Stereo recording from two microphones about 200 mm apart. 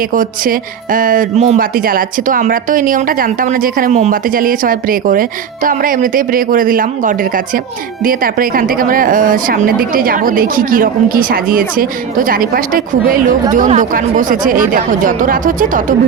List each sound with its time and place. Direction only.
0.1 s a woman's voice: 45° right (ahead or behind)